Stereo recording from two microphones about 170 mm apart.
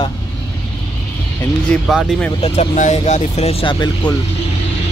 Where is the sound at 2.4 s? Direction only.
40° left (ahead or behind).